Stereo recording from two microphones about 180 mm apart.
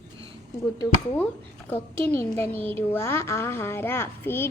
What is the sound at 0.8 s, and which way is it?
A woman's voice, 10° left (ahead or behind).